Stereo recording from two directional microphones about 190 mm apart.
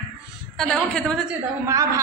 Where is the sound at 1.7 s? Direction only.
15° right (ahead or behind).